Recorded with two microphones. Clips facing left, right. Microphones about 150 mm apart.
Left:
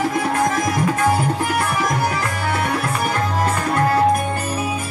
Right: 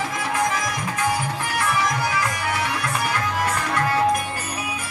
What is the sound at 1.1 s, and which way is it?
Music, 30° left (ahead or behind).